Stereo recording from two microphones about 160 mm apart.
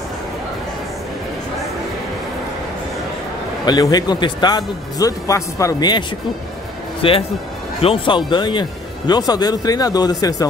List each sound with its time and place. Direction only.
3.6 s speech: 25° left (ahead or behind)